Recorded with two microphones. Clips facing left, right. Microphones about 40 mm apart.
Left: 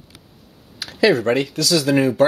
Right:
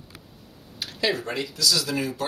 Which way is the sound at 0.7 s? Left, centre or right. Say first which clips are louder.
Left 10 dB; left.